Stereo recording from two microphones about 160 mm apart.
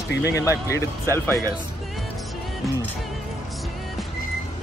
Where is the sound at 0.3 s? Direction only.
20° left (ahead or behind).